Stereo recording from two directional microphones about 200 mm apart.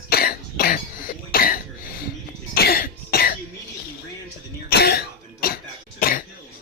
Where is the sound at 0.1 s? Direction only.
50° left (ahead or behind).